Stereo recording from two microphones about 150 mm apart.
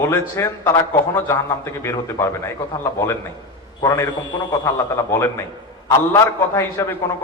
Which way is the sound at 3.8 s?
25° left (ahead or behind).